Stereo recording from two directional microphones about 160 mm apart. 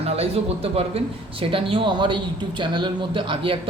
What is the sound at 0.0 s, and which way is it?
Speech, 40° right (ahead or behind).